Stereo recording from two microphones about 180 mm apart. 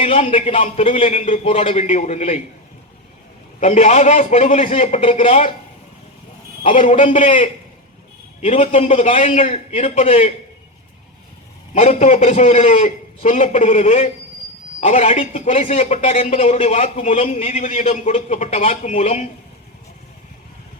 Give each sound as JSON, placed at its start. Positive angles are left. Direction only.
{"t": 0.0, "sound": "a man's voice", "side_deg": 35}
{"t": 3.6, "sound": "a man's voice", "side_deg": 35}
{"t": 6.6, "sound": "a man's voice", "side_deg": 35}
{"t": 11.7, "sound": "a man's voice", "side_deg": 40}